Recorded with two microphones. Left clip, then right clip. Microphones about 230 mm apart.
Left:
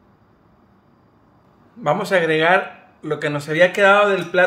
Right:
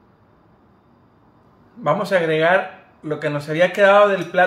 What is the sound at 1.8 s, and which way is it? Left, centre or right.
Speech, left.